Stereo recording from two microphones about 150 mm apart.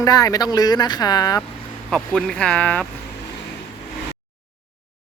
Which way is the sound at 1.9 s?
5° left (ahead or behind).